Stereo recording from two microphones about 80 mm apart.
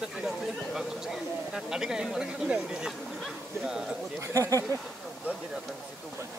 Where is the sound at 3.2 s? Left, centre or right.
Centre.